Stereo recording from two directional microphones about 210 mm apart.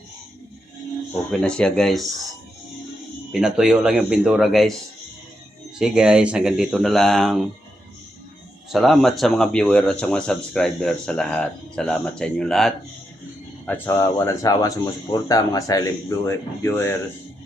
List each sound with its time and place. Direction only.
1.3 s speech: 5° left (ahead or behind)
3.3 s speech: 5° right (ahead or behind)
5.8 s speech: 5° right (ahead or behind)
8.7 s speech: centre (ahead or behind)
13.7 s speech: 10° left (ahead or behind)